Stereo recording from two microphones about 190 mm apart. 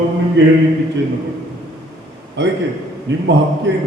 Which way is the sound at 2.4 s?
70° right (ahead or behind).